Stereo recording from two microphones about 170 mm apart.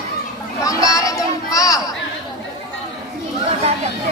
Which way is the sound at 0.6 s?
20° left (ahead or behind).